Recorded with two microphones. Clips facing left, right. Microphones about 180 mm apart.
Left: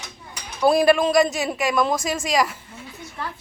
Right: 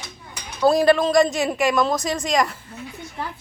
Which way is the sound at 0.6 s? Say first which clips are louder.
Even; 10° left (ahead or behind).